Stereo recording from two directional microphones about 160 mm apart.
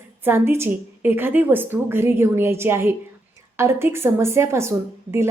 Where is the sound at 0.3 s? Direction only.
15° right (ahead or behind).